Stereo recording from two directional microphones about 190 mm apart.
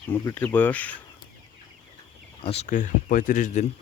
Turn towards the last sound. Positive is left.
turn(degrees=45)  # may be behind; listen again after turning